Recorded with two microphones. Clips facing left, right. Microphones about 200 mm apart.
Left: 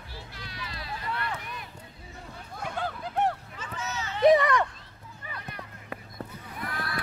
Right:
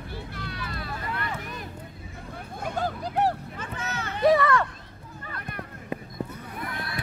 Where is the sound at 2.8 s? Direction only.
40° right (ahead or behind).